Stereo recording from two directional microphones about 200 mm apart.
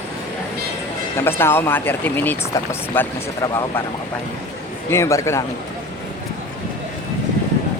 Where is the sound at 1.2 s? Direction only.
10° left (ahead or behind).